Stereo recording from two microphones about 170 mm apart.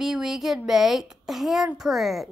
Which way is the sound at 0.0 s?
5° right (ahead or behind).